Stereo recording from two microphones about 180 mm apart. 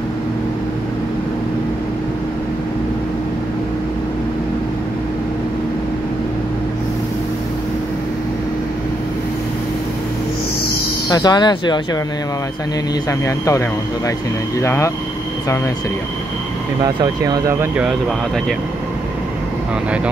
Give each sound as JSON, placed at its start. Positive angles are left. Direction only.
{"t": 11.1, "sound": "speech", "side_deg": 20}
{"t": 13.2, "sound": "speech", "side_deg": 15}
{"t": 16.8, "sound": "speech", "side_deg": -20}
{"t": 17.7, "sound": "speech", "side_deg": -5}